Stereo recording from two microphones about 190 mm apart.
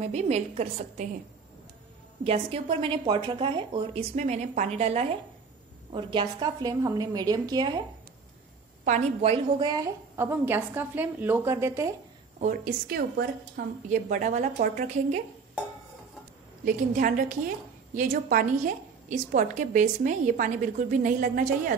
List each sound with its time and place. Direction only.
0.0 s a woman's voice: 35° right (ahead or behind)
2.2 s a woman's voice: 30° right (ahead or behind)
4.1 s a woman's voice: 40° right (ahead or behind); by 7.8 s 20° right (ahead or behind)
8.8 s a woman's voice: 35° right (ahead or behind)
9.6 s a woman's voice: 20° right (ahead or behind)
12.4 s a woman's voice: 45° right (ahead or behind)
16.6 s a woman's voice: 45° right (ahead or behind)